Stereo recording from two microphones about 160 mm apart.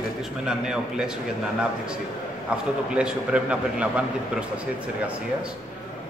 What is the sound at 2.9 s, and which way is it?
A man's voice, 5° right (ahead or behind).